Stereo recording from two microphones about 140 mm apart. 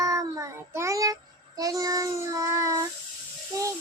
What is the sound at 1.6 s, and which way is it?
Child singing, 25° right (ahead or behind).